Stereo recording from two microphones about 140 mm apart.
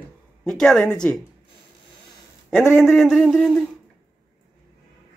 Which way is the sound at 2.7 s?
Centre (ahead or behind).